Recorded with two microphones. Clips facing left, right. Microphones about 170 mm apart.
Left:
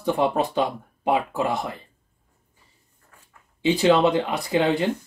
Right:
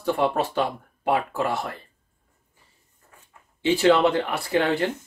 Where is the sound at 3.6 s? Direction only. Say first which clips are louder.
Even; 15° left (ahead or behind).